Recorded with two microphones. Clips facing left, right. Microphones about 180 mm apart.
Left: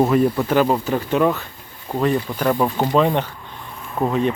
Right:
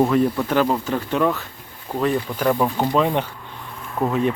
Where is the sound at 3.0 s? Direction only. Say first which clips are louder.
Left 4 dB; 5° right (ahead or behind).